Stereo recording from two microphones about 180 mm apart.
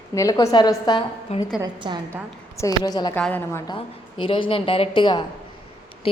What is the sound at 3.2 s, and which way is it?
Speech, 10° left (ahead or behind).